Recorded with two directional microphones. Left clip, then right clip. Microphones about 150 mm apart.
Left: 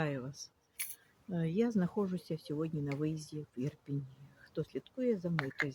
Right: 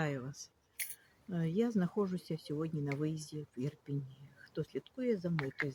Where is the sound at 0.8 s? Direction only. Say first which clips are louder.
Right 1 dB; 20° left (ahead or behind).